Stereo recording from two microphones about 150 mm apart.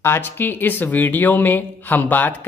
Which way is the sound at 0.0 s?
15° left (ahead or behind).